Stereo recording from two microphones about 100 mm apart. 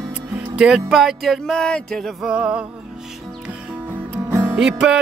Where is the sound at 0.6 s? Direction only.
5° right (ahead or behind).